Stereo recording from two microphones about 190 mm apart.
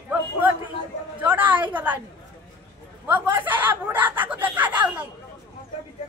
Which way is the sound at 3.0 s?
10° right (ahead or behind).